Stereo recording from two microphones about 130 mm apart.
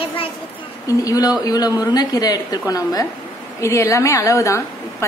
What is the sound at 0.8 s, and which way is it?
A woman's voice, 25° left (ahead or behind).